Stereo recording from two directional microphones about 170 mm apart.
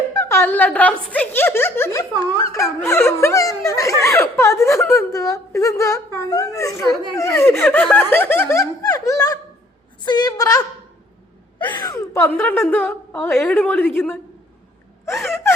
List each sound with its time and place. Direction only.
0.1 s a woman's voice: 15° left (ahead or behind)
11.8 s a woman's voice: 20° left (ahead or behind)
15.0 s a woman's voice: 15° left (ahead or behind)